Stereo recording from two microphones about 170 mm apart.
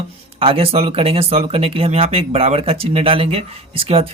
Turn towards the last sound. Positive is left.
turn(degrees=-35)  # may be behind; listen again after turning